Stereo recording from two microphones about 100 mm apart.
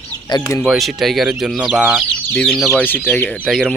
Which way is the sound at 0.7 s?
Centre (ahead or behind).